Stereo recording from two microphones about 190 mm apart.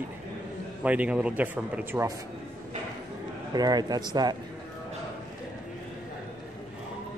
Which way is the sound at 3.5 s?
20° right (ahead or behind).